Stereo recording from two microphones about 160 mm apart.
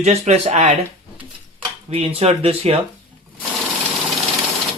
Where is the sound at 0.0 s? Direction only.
40° right (ahead or behind).